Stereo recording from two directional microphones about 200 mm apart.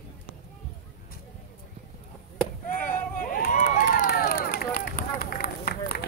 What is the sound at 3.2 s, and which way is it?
Run, 40° left (ahead or behind).